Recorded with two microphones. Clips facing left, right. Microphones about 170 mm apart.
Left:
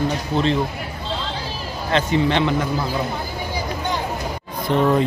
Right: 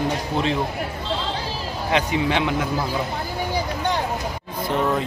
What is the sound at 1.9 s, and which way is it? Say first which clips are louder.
Speech: left 3 dB; 10° right (ahead or behind).